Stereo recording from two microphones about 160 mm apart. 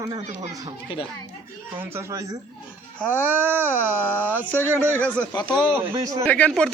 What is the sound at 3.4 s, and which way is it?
Speech, 15° right (ahead or behind).